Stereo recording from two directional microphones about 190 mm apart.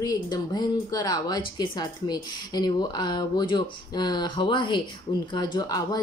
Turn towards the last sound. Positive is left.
turn(degrees=20)  # may be behind; listen again after turning